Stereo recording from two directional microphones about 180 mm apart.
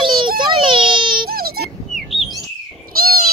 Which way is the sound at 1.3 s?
55° right (ahead or behind).